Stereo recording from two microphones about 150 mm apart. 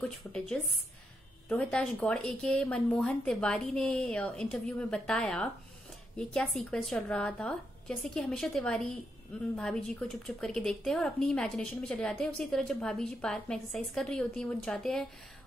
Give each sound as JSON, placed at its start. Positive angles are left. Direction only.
{"t": 0.0, "sound": "speech", "side_deg": 5}